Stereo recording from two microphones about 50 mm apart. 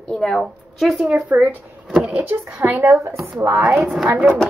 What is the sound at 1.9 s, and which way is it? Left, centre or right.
Speech, centre.